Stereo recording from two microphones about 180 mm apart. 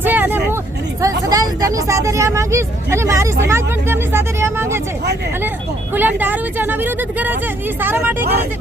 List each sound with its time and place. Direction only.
0.0 s vehicle: 10° right (ahead or behind)
1.0 s speech: 20° right (ahead or behind)
5.9 s speech: 10° right (ahead or behind)